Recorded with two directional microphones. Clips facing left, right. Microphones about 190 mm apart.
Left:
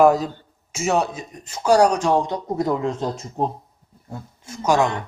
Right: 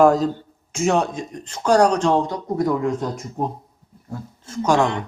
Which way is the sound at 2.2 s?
25° left (ahead or behind).